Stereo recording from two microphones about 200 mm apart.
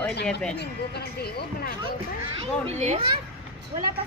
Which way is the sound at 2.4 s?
35° right (ahead or behind).